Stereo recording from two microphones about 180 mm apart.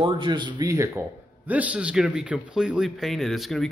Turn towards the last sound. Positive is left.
turn(degrees=0)  # may be behind; listen again after turning